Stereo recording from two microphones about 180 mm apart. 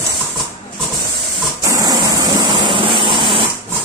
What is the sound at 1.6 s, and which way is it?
Vehicle, 20° right (ahead or behind).